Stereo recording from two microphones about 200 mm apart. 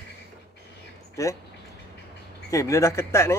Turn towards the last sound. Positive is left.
turn(degrees=15)  # may be behind; listen again after turning